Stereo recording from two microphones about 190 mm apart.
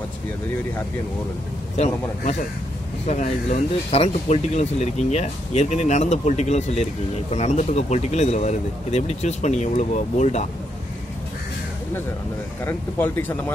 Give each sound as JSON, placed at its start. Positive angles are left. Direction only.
{"t": 3.1, "sound": "speech", "side_deg": 40}
{"t": 12.6, "sound": "speech", "side_deg": 10}